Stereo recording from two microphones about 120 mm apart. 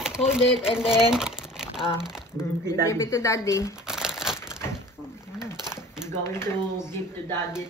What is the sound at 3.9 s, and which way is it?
Crumpling, 5° right (ahead or behind).